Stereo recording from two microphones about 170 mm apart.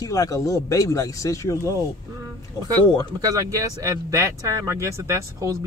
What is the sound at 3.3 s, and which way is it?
Speech, 20° right (ahead or behind).